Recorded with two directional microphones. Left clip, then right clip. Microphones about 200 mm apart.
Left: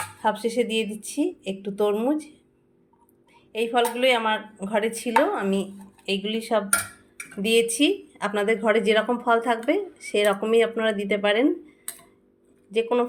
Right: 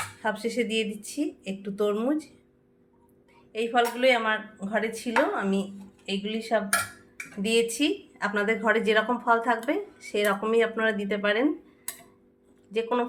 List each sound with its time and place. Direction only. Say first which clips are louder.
0.2 s speech: left 5 dB; 25° left (ahead or behind)
3.5 s a woman's voice: left 2 dB; 30° left (ahead or behind)
12.7 s speech: left 4 dB; 25° left (ahead or behind)